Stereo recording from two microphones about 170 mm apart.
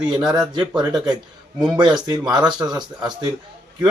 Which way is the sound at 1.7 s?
25° right (ahead or behind).